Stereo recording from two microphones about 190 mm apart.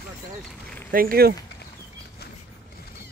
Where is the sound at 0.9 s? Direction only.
50° right (ahead or behind).